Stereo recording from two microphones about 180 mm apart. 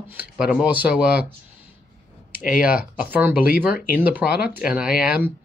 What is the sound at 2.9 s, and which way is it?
Speech, 10° right (ahead or behind).